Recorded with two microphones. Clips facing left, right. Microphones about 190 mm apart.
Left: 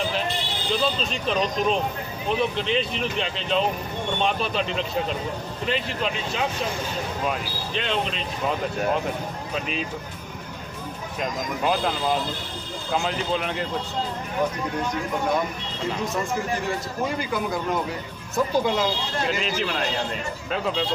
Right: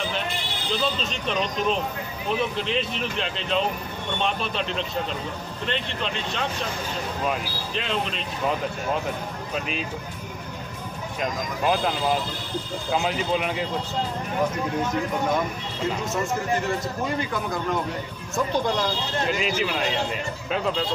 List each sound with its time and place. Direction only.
0.7 s a man's voice: centre (ahead or behind)
11.1 s a man's voice: centre (ahead or behind)
16.1 s a man's voice: centre (ahead or behind)
19.3 s a man's voice: centre (ahead or behind)